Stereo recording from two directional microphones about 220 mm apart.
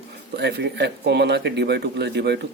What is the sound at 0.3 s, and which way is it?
Speech, 50° right (ahead or behind).